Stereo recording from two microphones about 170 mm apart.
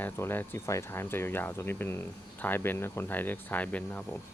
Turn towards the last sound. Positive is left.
turn(degrees=10)  # may be behind; listen again after turning